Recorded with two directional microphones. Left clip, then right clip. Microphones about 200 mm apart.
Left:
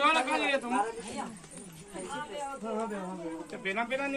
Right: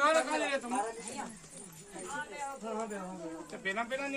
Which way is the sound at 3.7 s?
60° right (ahead or behind).